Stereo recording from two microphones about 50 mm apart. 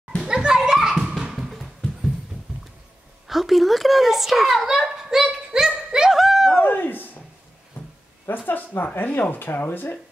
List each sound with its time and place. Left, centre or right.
0.2 s children playing: centre
3.3 s a woman's voice: centre
5.9 s laughter: centre
6.6 s a sound: left
8.5 s speech: left